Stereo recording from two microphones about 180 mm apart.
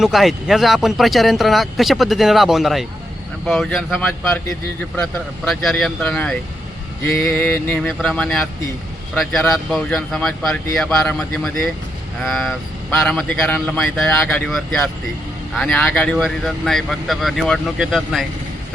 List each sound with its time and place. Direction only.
0.0 s speech: centre (ahead or behind)
5.5 s speech: centre (ahead or behind)